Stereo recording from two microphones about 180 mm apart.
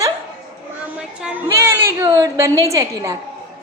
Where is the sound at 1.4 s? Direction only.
15° right (ahead or behind).